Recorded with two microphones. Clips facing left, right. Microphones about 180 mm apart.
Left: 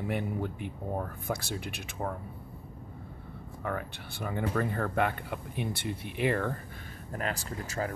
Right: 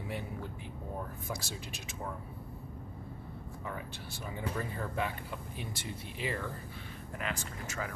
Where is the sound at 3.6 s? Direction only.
60° left (ahead or behind).